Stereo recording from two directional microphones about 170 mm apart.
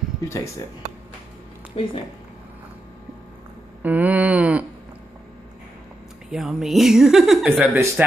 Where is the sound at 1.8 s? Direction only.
35° left (ahead or behind).